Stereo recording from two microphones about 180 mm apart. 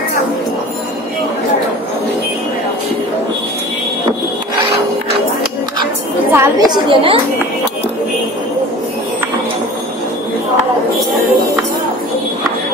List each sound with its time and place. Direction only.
6.3 s a woman's voice: 15° right (ahead or behind)